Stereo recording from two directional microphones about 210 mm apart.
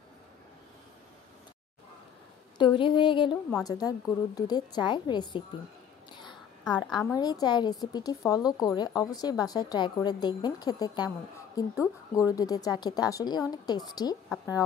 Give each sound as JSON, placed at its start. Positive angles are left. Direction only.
{"t": 2.5, "sound": "a woman's voice", "side_deg": 20}
{"t": 6.2, "sound": "a sound", "side_deg": 20}
{"t": 7.2, "sound": "a woman's voice", "side_deg": 20}